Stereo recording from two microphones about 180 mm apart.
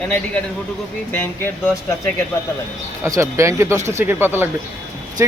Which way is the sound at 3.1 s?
15° right (ahead or behind).